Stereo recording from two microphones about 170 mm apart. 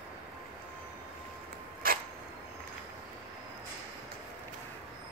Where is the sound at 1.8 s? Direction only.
60° right (ahead or behind).